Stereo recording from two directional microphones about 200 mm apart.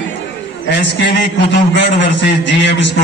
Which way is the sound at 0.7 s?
60° left (ahead or behind).